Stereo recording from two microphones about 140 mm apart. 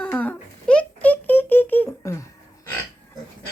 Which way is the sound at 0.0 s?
10° left (ahead or behind).